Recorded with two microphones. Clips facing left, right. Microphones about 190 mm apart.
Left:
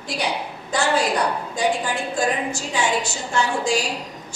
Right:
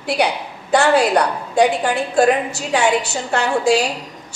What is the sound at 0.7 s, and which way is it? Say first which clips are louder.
A woman's voice: right 7 dB; 65° right (ahead or behind).